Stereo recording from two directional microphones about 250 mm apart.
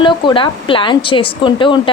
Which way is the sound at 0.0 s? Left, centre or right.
Centre.